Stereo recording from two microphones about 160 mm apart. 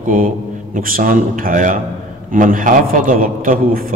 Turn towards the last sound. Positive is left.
turn(degrees=-55)  # may be behind; listen again after turning